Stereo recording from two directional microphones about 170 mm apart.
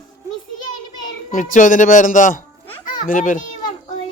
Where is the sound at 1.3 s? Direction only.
50° left (ahead or behind).